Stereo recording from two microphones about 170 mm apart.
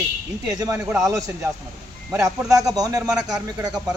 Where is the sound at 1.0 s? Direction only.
20° right (ahead or behind).